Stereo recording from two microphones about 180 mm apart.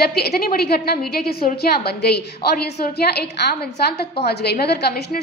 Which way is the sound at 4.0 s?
65° left (ahead or behind).